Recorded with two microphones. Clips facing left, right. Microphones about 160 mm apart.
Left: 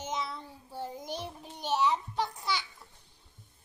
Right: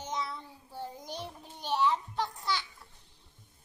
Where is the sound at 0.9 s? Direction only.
20° left (ahead or behind).